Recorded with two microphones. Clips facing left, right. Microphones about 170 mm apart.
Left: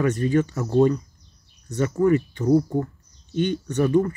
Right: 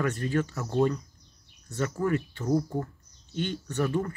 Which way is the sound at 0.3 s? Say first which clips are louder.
Left 7 dB; 15° left (ahead or behind).